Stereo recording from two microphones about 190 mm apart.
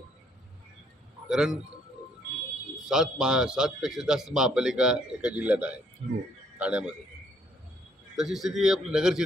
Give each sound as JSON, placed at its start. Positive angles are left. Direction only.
{"t": 1.3, "sound": "a man's voice", "side_deg": -5}
{"t": 2.9, "sound": "a man's voice", "side_deg": -5}
{"t": 6.0, "sound": "a man's voice", "side_deg": -35}
{"t": 6.6, "sound": "a man's voice", "side_deg": -5}
{"t": 8.2, "sound": "a man's voice", "side_deg": 0}